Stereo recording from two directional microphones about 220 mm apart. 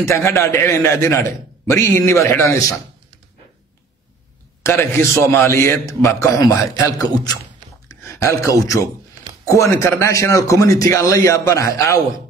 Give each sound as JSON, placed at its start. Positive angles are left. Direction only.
{"t": 0.0, "sound": "a man's voice", "side_deg": 15}
{"t": 4.6, "sound": "a man's voice", "side_deg": 10}